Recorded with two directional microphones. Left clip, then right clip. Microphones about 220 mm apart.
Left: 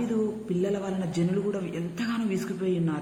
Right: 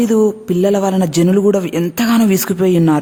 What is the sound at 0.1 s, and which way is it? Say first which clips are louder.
A man's voice: right 15 dB; 55° right (ahead or behind).